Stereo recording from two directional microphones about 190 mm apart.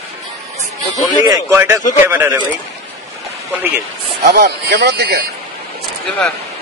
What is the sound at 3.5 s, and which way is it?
Speech, 10° right (ahead or behind).